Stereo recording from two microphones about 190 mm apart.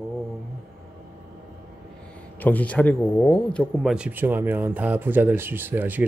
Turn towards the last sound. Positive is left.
turn(degrees=-10)  # may be behind; listen again after turning